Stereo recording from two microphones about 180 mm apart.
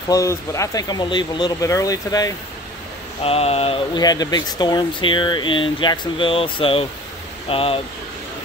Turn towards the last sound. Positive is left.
turn(degrees=30)  # may be behind; listen again after turning